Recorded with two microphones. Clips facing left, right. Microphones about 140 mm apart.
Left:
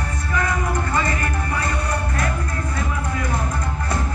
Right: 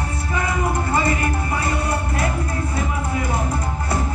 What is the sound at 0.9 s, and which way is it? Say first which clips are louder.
Music: right 2 dB; 25° right (ahead or behind).